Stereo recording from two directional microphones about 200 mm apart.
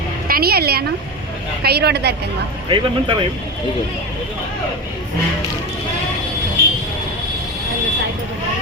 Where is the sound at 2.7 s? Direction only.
25° right (ahead or behind).